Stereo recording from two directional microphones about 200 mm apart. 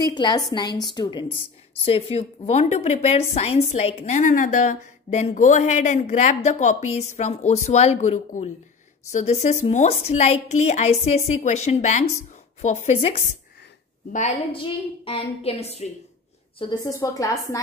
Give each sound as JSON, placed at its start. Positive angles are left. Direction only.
{"t": 0.0, "sound": "a woman's voice", "side_deg": 20}
{"t": 16.5, "sound": "a woman's voice", "side_deg": 20}